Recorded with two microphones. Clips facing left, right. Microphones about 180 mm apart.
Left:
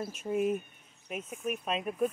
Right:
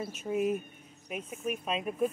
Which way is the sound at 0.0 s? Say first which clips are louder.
Even; centre (ahead or behind).